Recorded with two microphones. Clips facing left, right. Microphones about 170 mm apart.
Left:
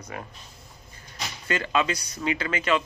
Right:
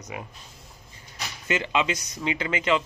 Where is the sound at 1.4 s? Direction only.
20° right (ahead or behind).